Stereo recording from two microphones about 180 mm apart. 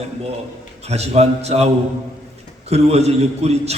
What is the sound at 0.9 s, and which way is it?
A man's voice, 35° right (ahead or behind).